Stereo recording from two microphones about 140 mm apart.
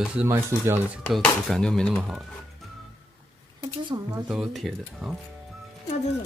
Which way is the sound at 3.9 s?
30° right (ahead or behind).